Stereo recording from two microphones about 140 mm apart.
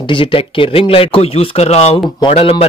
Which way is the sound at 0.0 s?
40° left (ahead or behind).